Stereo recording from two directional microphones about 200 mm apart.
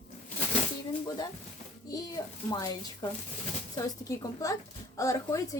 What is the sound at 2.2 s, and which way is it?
A woman's voice, 20° left (ahead or behind).